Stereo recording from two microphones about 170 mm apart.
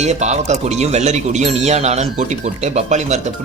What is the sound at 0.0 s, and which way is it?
Speech, 40° right (ahead or behind).